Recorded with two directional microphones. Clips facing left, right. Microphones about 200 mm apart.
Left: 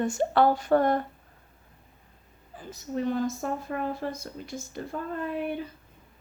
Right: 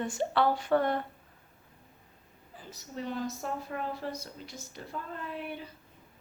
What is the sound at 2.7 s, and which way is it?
A woman's voice, 50° left (ahead or behind).